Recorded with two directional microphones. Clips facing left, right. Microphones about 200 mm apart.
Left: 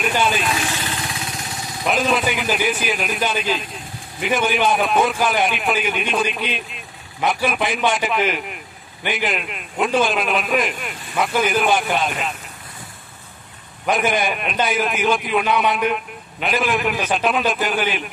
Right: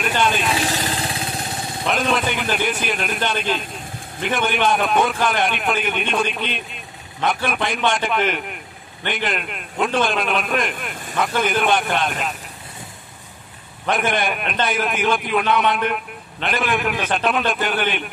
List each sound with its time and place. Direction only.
0.0 s vehicle: 5° left (ahead or behind)
0.6 s vehicle: 35° right (ahead or behind)
2.0 s a man's voice: centre (ahead or behind)
13.8 s a man's voice: centre (ahead or behind)